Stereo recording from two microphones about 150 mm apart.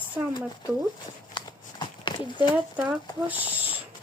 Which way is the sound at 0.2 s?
15° right (ahead or behind).